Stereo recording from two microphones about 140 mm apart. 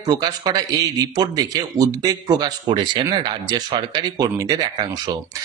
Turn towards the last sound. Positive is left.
turn(degrees=-30)  # may be behind; listen again after turning